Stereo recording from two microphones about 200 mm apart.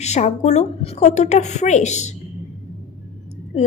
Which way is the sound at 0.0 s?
35° left (ahead or behind).